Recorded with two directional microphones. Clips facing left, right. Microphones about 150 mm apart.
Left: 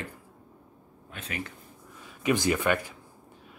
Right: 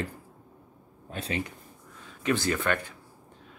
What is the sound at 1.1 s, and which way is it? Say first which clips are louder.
Speech: right 6 dB; 35° right (ahead or behind).